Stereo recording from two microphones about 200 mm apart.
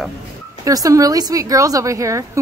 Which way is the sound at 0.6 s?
15° right (ahead or behind).